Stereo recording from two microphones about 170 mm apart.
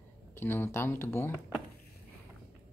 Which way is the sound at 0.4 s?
15° left (ahead or behind).